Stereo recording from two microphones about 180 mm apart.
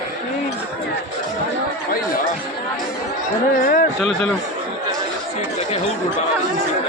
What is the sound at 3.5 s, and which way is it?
Speech, 55° left (ahead or behind).